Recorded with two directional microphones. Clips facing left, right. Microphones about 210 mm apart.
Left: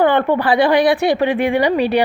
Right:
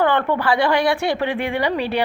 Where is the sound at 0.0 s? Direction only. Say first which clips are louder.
Left 4 dB; 15° left (ahead or behind).